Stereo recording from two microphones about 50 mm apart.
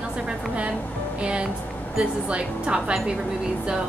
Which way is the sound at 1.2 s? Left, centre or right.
Right.